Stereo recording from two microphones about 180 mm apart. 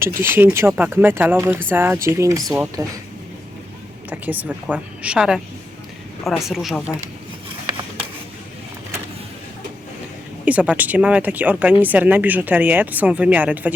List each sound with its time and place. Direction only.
0.0 s speech: 15° right (ahead or behind)
4.1 s speech: 10° right (ahead or behind)
10.4 s speech: 10° right (ahead or behind)